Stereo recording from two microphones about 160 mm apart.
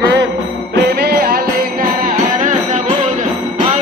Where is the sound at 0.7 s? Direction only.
80° right.